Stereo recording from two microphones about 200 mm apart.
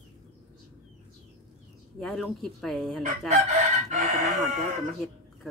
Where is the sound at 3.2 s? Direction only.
35° right (ahead or behind).